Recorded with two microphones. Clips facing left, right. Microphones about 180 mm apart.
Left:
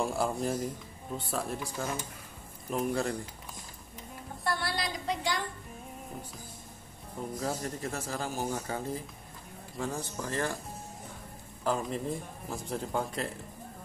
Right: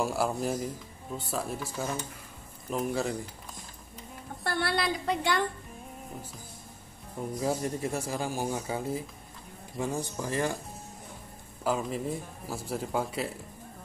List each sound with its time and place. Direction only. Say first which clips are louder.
0.0 s speech: right 1 dB; 5° right (ahead or behind)
4.5 s a woman's voice: right 4 dB; 65° right (ahead or behind)
7.3 s speech: right 5 dB; 15° right (ahead or behind)
11.6 s speech: right 1 dB; 5° right (ahead or behind)